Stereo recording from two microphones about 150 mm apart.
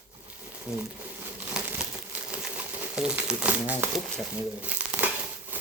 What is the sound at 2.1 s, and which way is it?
Crumpling, 10° right (ahead or behind).